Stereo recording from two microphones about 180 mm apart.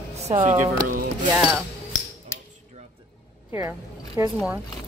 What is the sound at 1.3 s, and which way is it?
Speech, centre (ahead or behind).